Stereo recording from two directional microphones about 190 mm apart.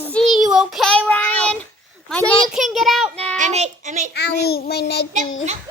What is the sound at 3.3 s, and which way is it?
Speech, 40° right (ahead or behind).